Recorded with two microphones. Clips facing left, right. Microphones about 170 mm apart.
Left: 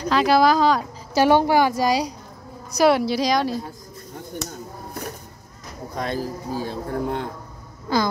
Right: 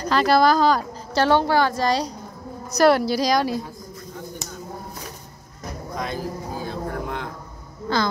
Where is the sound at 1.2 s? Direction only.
15° left (ahead or behind).